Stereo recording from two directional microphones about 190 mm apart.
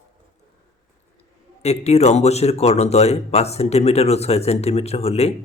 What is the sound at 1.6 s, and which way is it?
Speech, 35° left (ahead or behind).